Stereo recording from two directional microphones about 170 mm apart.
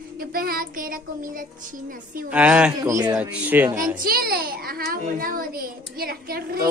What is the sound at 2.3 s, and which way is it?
A man's voice, 5° right (ahead or behind).